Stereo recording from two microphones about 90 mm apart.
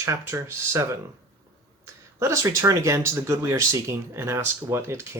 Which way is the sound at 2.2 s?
35° right (ahead or behind).